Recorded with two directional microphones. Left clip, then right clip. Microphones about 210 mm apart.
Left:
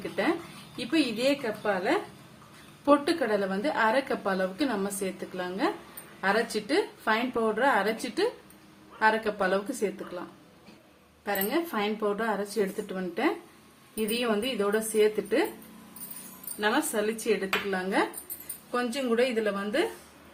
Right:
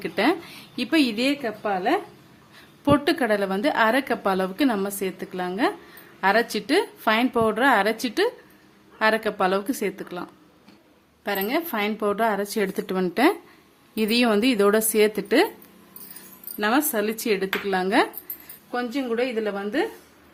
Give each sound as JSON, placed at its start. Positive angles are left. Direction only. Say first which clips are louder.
{"t": 0.8, "sound": "a woman's voice", "louder": "right 5 dB", "side_deg": -45}
{"t": 11.3, "sound": "a woman's voice", "louder": "right 4 dB", "side_deg": -45}
{"t": 16.6, "sound": "a woman's voice", "louder": "right 5 dB", "side_deg": -55}
{"t": 18.7, "sound": "a woman's voice", "louder": "right 2 dB", "side_deg": -30}